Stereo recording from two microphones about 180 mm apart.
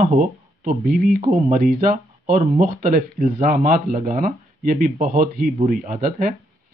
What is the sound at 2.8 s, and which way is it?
Speech, 45° right (ahead or behind).